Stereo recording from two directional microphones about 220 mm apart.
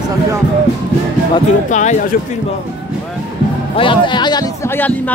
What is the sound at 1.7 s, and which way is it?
Speech, 35° left (ahead or behind).